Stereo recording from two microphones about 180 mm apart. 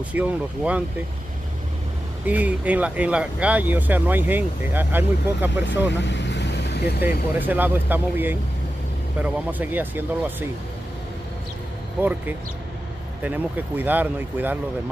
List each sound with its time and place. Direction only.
0.1 s speech: 10° right (ahead or behind)
2.2 s speech: 10° right (ahead or behind)
5.9 s vehicle: 80° left
7.3 s speech: 10° right (ahead or behind)
12.0 s speech: 10° right (ahead or behind)